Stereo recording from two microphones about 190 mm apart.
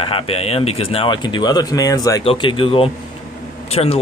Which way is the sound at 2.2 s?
30° left (ahead or behind).